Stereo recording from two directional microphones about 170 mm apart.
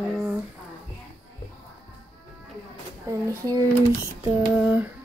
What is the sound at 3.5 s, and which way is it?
Speech, 15° right (ahead or behind).